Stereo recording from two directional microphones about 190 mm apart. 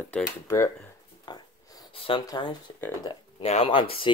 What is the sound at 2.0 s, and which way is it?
Speech, 25° left (ahead or behind).